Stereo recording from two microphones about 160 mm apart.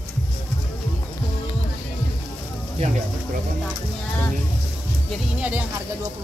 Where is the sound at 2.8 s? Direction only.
40° right (ahead or behind).